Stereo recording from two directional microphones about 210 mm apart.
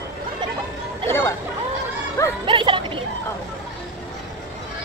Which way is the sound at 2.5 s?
25° right (ahead or behind).